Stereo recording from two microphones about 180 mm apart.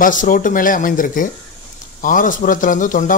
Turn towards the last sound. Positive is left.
turn(degrees=45)  # may be behind; listen again after turning